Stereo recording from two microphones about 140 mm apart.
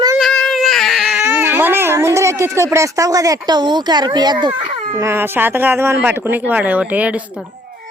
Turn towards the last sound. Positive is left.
turn(degrees=-10)  # may be behind; listen again after turning